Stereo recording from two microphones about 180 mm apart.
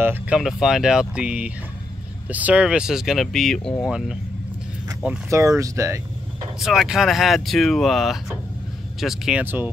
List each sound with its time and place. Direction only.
0.0 s speech: 10° right (ahead or behind)
0.4 s speech: centre (ahead or behind)
5.0 s speech: 15° right (ahead or behind)
6.6 s speech: centre (ahead or behind)